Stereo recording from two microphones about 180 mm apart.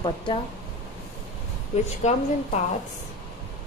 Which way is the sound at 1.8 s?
35° left (ahead or behind).